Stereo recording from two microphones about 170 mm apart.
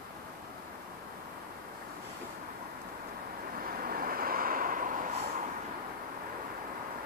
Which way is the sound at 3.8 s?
60° right (ahead or behind).